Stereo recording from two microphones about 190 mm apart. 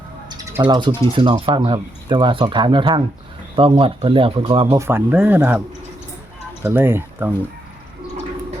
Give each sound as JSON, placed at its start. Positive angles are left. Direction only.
{"t": 0.3, "sound": "speech", "side_deg": -20}